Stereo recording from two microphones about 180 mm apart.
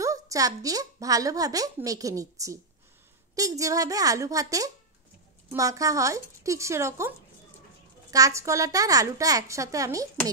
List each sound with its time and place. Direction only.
0.0 s a woman's voice: 20° right (ahead or behind)